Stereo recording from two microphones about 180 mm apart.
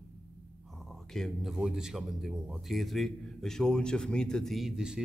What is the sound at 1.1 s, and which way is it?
Speech, centre (ahead or behind).